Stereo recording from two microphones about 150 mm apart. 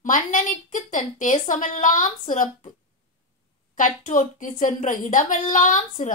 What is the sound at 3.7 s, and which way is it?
A woman's voice, 60° left (ahead or behind).